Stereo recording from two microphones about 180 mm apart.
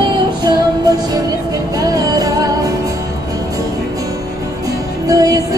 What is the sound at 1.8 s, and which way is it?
Music, 20° right (ahead or behind).